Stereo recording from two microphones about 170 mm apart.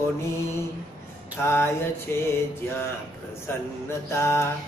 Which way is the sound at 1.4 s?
15° left (ahead or behind).